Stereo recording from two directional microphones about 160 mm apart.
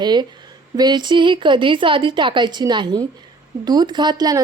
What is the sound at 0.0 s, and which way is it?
Speech, 25° right (ahead or behind).